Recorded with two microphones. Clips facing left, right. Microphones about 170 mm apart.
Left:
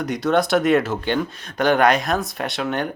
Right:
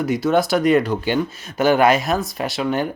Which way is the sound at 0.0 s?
5° right (ahead or behind).